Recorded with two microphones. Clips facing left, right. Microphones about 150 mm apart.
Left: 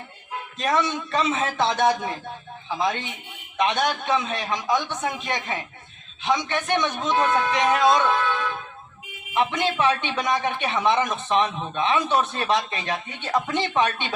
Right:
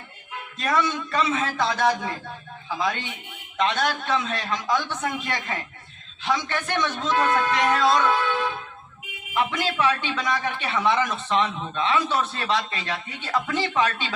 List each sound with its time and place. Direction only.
0.6 s a man's voice: 25° left (ahead or behind)
9.3 s a man's voice: 20° left (ahead or behind)